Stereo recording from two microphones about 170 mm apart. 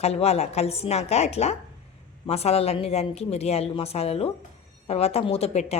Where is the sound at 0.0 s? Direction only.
40° left (ahead or behind).